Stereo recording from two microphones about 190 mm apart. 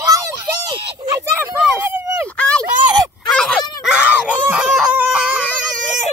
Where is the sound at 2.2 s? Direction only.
5° left (ahead or behind).